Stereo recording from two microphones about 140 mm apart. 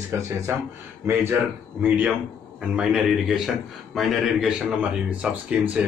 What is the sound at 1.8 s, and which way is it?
A man's voice, 10° right (ahead or behind).